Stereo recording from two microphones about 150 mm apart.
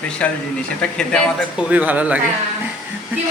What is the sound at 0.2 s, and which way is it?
Speech, 10° left (ahead or behind).